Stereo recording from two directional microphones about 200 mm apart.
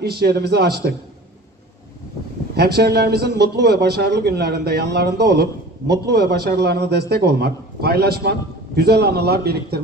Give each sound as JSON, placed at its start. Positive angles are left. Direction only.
{"t": 0.0, "sound": "a man's voice", "side_deg": -50}
{"t": 2.5, "sound": "a man's voice", "side_deg": -55}